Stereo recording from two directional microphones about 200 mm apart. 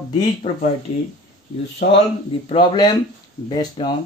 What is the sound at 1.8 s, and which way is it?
Speech, 40° left (ahead or behind).